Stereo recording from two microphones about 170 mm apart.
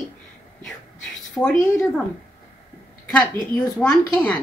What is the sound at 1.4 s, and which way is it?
Speech, 15° left (ahead or behind).